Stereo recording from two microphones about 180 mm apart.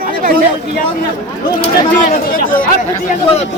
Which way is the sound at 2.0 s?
50° left (ahead or behind).